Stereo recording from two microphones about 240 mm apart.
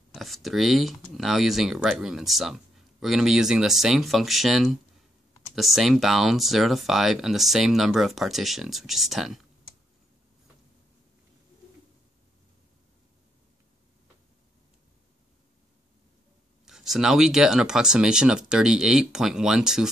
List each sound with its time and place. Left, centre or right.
0.1 s speech: centre
16.6 s speech: centre